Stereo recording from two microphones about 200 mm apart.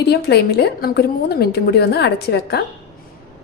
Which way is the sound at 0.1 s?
55° left (ahead or behind).